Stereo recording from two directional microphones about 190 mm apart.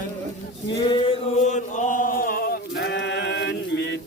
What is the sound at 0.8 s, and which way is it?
Chant, 25° left (ahead or behind).